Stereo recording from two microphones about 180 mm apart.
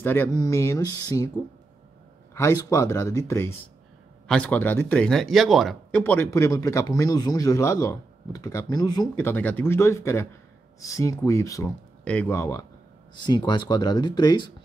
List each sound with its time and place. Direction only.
0.0 s speech: 10° left (ahead or behind)
2.3 s speech: 15° left (ahead or behind)